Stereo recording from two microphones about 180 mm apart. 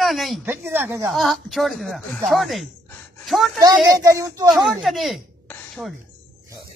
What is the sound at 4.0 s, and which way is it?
Speech, 15° right (ahead or behind).